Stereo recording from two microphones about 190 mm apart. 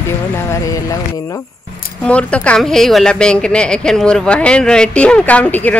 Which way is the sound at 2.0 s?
5° left (ahead or behind).